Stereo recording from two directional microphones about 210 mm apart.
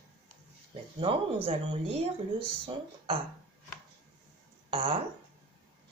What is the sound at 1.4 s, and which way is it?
A woman's voice, 30° right (ahead or behind).